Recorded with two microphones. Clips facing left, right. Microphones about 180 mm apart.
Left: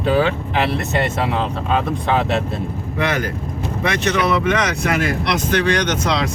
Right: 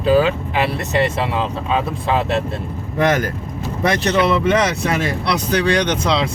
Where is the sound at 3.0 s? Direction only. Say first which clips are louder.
Right 4 dB; 45° right (ahead or behind).